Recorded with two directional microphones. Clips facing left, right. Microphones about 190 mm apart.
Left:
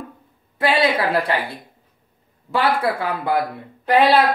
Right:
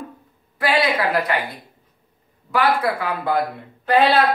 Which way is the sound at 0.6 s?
25° left (ahead or behind).